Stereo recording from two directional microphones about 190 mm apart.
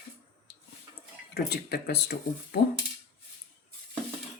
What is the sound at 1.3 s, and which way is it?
Speech, 60° left (ahead or behind).